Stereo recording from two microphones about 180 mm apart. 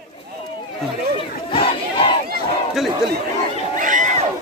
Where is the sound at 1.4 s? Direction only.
30° left (ahead or behind).